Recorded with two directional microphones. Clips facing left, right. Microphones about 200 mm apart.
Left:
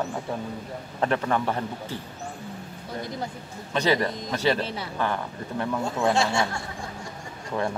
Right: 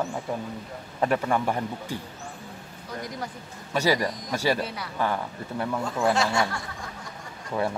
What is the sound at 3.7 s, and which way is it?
Speech, 10° right (ahead or behind).